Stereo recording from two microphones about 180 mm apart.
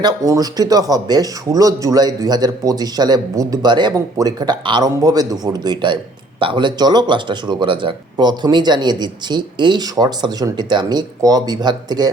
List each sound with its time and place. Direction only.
0.0 s speech: 20° right (ahead or behind)